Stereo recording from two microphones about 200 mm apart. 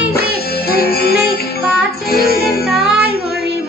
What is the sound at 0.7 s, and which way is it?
Music, 50° left (ahead or behind).